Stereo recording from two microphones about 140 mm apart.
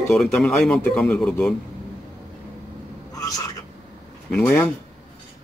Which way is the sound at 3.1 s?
25° left (ahead or behind).